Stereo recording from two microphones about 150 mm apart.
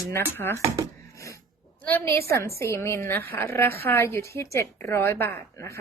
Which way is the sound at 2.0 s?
20° left (ahead or behind).